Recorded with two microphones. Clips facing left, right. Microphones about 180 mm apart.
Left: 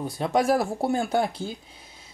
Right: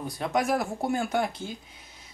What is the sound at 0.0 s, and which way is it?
Speech, 30° left (ahead or behind).